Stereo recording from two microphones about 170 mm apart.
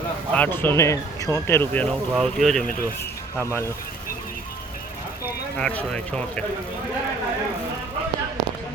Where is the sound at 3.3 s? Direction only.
15° left (ahead or behind).